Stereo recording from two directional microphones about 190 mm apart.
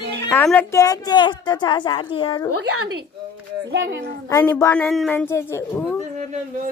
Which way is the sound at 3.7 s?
70° right (ahead or behind).